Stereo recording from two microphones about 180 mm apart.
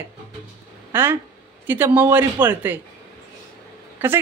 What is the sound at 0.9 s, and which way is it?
A man's voice, 10° right (ahead or behind).